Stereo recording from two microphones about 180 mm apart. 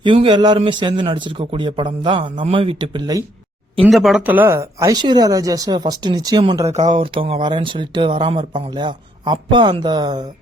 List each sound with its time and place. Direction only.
0.0 s speech: 30° right (ahead or behind)
3.8 s speech: centre (ahead or behind); by 10.2 s 25° right (ahead or behind)